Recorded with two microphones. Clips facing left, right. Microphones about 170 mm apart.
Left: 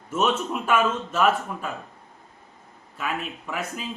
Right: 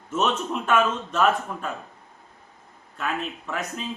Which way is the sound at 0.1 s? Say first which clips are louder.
Left 1 dB; 10° left (ahead or behind).